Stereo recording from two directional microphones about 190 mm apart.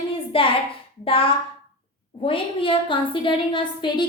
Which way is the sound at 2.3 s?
25° left (ahead or behind).